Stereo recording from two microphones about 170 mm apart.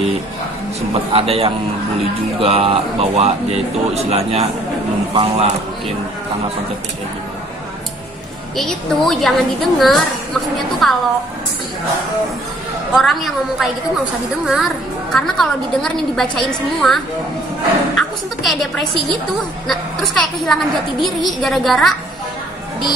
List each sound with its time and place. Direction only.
0.9 s speech: 35° right (ahead or behind)
8.5 s a woman's voice: centre (ahead or behind)
12.9 s a woman's voice: centre (ahead or behind)